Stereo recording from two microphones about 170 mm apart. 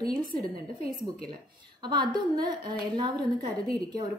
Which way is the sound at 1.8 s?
25° right (ahead or behind).